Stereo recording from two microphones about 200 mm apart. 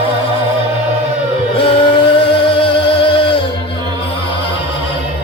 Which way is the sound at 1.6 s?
25° left (ahead or behind).